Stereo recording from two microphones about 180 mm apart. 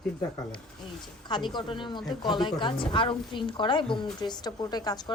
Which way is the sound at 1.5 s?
25° left (ahead or behind).